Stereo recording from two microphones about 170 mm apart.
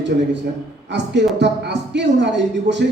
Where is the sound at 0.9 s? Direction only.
90° right.